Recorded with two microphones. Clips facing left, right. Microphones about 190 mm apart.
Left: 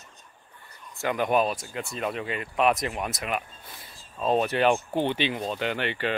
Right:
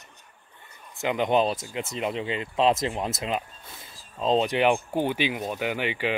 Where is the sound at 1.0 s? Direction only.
20° right (ahead or behind).